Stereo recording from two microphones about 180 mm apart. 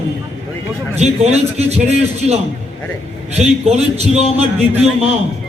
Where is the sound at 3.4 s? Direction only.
35° right (ahead or behind).